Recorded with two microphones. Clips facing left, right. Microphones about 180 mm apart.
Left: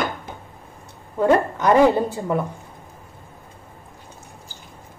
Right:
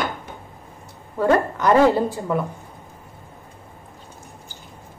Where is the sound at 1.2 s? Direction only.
20° left (ahead or behind).